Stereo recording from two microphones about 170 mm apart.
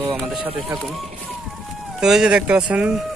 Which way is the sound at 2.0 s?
5° right (ahead or behind).